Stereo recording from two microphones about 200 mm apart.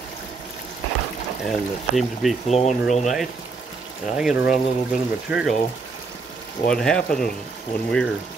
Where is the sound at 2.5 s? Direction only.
35° left (ahead or behind).